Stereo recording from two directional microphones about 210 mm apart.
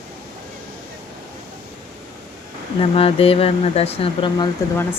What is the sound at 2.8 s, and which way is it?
Speech, 25° left (ahead or behind).